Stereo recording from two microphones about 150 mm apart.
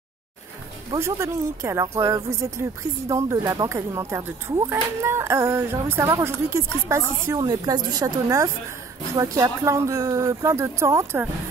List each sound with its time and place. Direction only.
0.9 s speech: 20° right (ahead or behind)